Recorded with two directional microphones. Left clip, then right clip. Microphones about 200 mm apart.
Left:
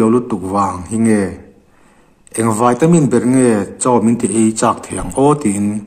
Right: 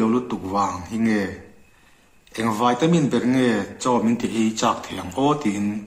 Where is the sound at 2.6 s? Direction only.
45° left (ahead or behind).